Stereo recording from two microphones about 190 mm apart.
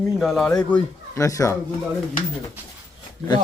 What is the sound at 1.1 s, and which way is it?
Speech, 15° left (ahead or behind).